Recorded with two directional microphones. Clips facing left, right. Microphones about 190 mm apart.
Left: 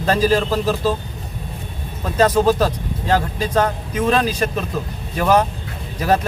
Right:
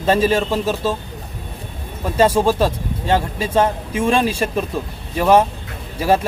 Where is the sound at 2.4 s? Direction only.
25° right (ahead or behind).